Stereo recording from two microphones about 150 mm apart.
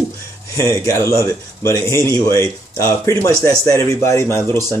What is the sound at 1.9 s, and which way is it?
Speech, 20° right (ahead or behind).